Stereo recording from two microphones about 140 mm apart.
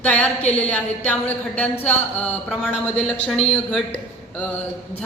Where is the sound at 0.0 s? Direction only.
10° left (ahead or behind).